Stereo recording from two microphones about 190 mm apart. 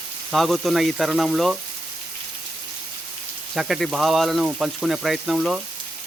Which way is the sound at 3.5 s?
Centre (ahead or behind).